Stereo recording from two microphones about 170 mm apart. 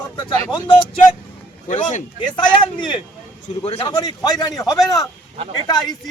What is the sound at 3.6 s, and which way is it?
Speech, 40° left (ahead or behind).